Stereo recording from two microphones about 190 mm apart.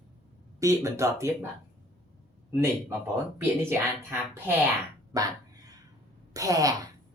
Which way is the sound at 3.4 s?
15° right (ahead or behind).